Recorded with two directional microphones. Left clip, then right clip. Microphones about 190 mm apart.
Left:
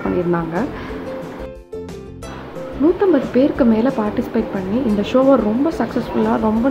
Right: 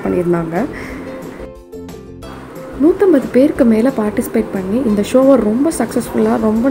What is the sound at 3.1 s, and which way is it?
A woman's voice, 15° right (ahead or behind).